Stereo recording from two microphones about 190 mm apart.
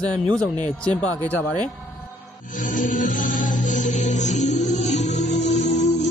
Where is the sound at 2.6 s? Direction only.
45° left (ahead or behind).